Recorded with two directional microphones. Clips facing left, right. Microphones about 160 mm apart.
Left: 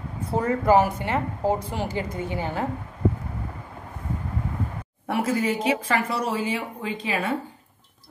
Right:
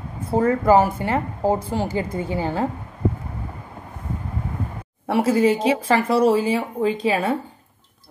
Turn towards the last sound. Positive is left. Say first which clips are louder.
# right 7 dB
turn(degrees=-35)  # may be behind; listen again after turning